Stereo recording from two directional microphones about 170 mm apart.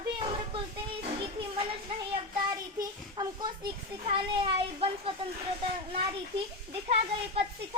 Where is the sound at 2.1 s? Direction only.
25° right (ahead or behind).